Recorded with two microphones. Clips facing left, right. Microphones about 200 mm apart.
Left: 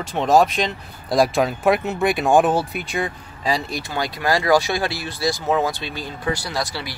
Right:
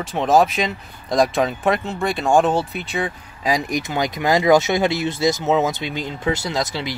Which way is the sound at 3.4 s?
15° right (ahead or behind).